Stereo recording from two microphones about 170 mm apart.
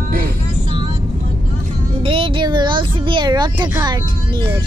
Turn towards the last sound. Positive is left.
turn(degrees=-25)  # may be behind; listen again after turning